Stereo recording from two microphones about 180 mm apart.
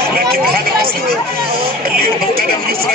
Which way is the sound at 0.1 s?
55° right (ahead or behind).